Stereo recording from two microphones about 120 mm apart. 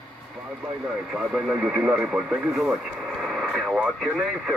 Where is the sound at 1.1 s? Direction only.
5° right (ahead or behind).